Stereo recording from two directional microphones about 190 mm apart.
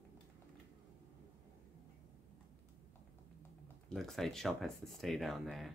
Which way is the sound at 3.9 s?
Centre (ahead or behind).